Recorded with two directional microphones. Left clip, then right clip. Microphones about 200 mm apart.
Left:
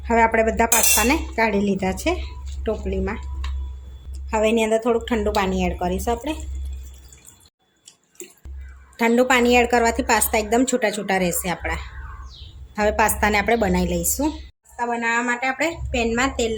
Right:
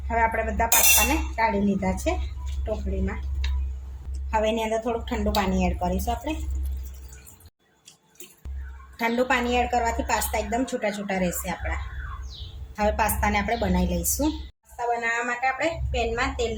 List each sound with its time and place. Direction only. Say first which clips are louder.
0.1 s a woman's voice: left 7 dB; 50° left (ahead or behind)
4.3 s a woman's voice: left 5 dB; 30° left (ahead or behind)
9.0 s a woman's voice: left 6 dB; 35° left (ahead or behind)
12.7 s a woman's voice: left 5 dB; 35° left (ahead or behind)